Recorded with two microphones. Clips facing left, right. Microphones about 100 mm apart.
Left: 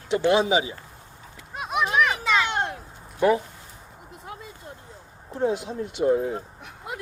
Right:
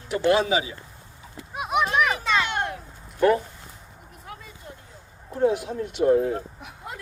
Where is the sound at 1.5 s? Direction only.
5° right (ahead or behind).